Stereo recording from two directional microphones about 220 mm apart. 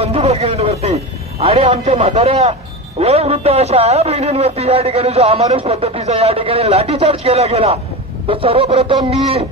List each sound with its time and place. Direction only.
0.0 s a man's voice: 30° right (ahead or behind)